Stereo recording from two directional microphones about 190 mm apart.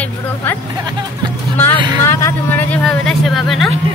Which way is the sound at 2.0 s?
10° left (ahead or behind).